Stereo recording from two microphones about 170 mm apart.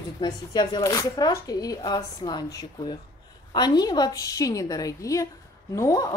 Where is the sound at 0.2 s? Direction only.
25° left (ahead or behind).